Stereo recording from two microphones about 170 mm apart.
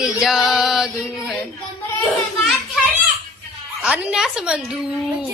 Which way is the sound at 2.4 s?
Centre (ahead or behind).